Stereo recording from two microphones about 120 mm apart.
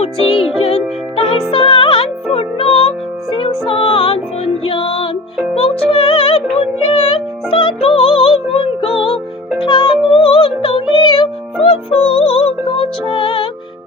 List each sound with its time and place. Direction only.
0.0 s music: 55° left (ahead or behind)